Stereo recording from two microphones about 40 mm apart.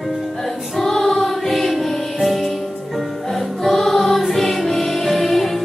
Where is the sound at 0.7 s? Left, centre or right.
Centre.